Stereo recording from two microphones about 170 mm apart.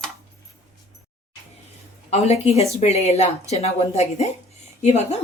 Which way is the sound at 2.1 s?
40° left (ahead or behind).